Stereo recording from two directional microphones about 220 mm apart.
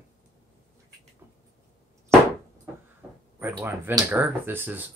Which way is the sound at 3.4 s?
10° right (ahead or behind).